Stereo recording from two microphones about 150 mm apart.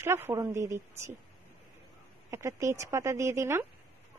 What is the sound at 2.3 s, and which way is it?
Speech, 20° right (ahead or behind).